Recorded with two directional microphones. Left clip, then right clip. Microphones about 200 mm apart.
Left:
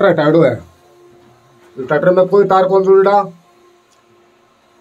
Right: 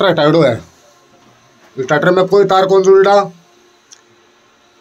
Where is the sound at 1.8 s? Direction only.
5° right (ahead or behind).